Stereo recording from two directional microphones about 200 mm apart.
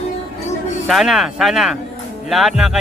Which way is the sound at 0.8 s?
Centre (ahead or behind).